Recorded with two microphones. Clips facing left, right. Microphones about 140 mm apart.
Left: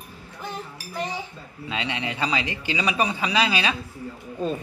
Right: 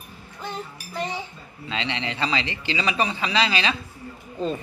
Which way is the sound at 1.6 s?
10° left (ahead or behind).